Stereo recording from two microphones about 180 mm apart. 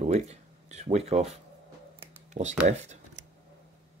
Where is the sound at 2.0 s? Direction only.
40° right (ahead or behind).